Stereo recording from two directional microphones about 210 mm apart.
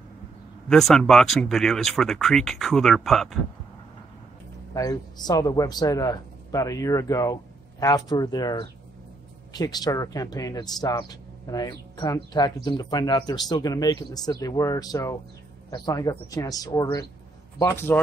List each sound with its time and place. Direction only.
0.7 s speech: centre (ahead or behind)
4.7 s speech: 20° left (ahead or behind)